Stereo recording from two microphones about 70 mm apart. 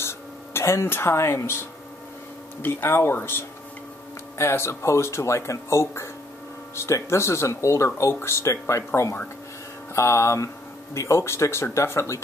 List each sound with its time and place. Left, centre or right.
0.0 s speech: left
9.9 s music: left
11.0 s speech: left